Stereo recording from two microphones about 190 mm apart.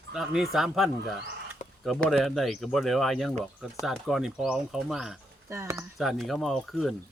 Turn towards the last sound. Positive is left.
turn(degrees=0)  # may be behind; listen again after turning